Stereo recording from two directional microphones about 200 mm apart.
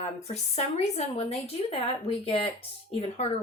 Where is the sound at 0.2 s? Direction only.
35° left (ahead or behind).